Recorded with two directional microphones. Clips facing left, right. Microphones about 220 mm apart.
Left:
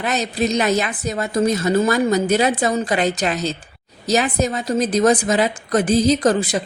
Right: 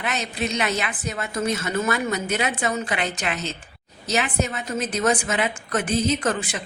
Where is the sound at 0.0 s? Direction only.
40° left (ahead or behind).